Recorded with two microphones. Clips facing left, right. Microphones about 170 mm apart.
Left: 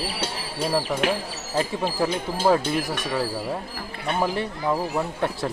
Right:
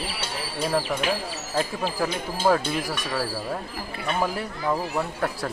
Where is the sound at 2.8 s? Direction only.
20° left (ahead or behind).